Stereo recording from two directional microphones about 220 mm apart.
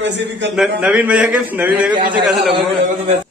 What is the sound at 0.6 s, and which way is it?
A man's voice, 5° right (ahead or behind).